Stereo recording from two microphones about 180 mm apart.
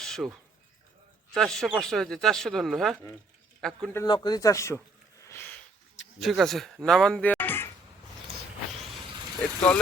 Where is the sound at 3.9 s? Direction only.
20° left (ahead or behind).